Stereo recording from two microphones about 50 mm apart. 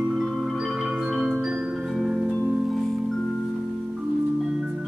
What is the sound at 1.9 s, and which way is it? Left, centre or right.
Music, centre.